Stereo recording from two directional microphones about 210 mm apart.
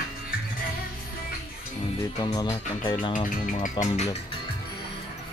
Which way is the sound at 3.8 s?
35° left (ahead or behind).